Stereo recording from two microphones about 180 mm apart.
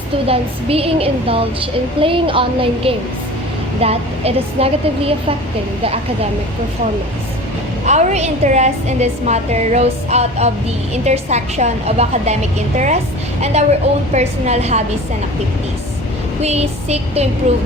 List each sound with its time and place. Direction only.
0.3 s a woman's voice: 35° right (ahead or behind)
7.9 s a woman's voice: 40° right (ahead or behind)
13.4 s a woman's voice: 35° right (ahead or behind)
16.4 s a woman's voice: 35° right (ahead or behind)